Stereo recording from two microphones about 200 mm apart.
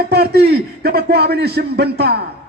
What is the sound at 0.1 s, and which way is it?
A man's voice, 55° right (ahead or behind).